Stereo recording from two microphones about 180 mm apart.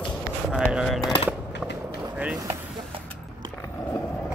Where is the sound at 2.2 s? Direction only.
5° right (ahead or behind).